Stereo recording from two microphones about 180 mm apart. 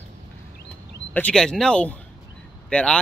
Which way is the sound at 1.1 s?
5° left (ahead or behind).